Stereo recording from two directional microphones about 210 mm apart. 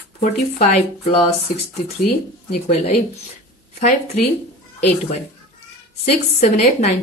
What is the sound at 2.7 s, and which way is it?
Speech, 30° left (ahead or behind).